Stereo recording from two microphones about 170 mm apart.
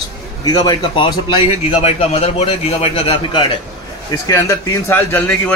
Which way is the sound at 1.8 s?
40° left (ahead or behind).